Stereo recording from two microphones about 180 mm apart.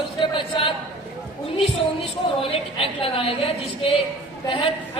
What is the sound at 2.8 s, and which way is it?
Speech, 30° left (ahead or behind).